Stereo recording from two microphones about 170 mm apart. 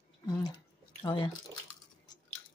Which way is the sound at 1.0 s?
25° left (ahead or behind).